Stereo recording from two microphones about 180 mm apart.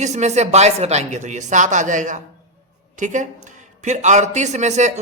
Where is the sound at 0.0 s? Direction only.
40° right (ahead or behind).